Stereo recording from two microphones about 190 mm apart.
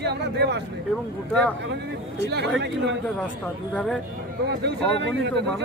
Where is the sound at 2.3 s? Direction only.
65° right (ahead or behind).